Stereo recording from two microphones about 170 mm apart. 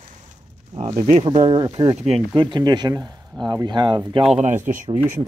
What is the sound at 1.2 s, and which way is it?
Speech, 30° right (ahead or behind).